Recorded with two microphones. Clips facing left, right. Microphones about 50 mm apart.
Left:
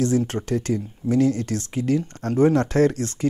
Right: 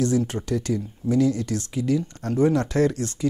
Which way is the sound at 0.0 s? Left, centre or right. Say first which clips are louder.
Left 1 dB; left.